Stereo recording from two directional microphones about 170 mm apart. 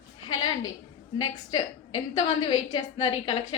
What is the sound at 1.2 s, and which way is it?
A woman's voice, 30° left (ahead or behind).